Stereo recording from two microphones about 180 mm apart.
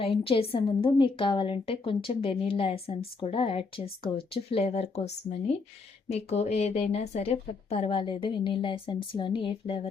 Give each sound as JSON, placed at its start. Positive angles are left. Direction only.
{"t": 0.0, "sound": "a woman's voice", "side_deg": 30}